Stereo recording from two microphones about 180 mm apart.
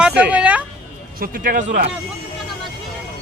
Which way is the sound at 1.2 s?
55° right (ahead or behind).